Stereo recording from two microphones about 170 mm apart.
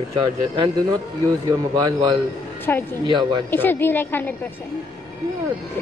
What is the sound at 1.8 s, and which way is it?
Speech, 20° right (ahead or behind).